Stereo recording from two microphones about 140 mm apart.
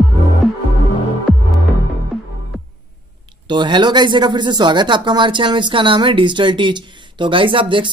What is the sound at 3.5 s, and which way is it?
Speech, 30° right (ahead or behind).